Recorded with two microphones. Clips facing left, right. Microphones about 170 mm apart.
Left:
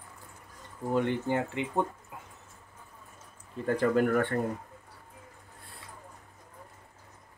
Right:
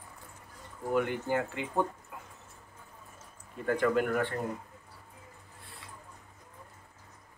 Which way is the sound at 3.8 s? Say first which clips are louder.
Left 3 dB; 45° left (ahead or behind).